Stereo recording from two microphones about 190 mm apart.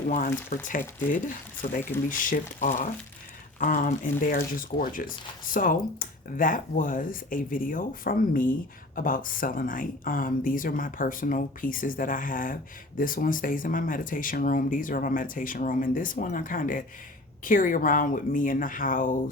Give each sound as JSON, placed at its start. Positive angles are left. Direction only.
{"t": 0.5, "sound": "speech", "side_deg": 45}
{"t": 2.0, "sound": "speech", "side_deg": 45}